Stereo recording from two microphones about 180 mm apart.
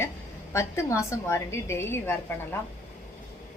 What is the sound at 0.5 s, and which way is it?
A woman's voice, 15° left (ahead or behind).